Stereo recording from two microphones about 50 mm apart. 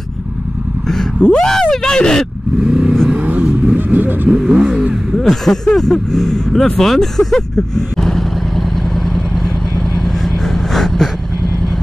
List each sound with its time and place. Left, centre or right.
1.2 s speech: centre
2.6 s vehicle: centre
3.2 s vehicle: right
4.3 s vehicle: centre
5.1 s vehicle: centre